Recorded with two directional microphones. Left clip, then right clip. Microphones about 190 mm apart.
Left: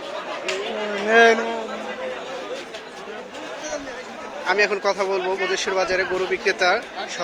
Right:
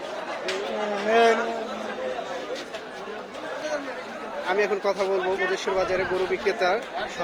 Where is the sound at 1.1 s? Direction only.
40° left (ahead or behind).